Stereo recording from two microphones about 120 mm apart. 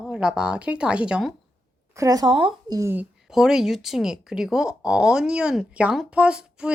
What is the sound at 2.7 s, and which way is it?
Speech, 20° right (ahead or behind).